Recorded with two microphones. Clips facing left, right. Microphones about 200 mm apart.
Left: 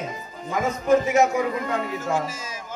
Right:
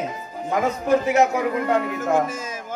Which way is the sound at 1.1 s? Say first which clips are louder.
Right 1 dB; 60° right (ahead or behind).